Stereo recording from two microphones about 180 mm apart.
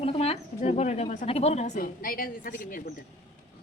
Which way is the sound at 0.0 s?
35° left (ahead or behind).